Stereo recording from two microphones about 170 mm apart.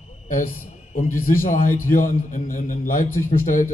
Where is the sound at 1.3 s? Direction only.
55° left (ahead or behind).